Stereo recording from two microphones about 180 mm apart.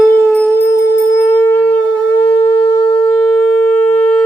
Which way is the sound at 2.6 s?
30° left (ahead or behind).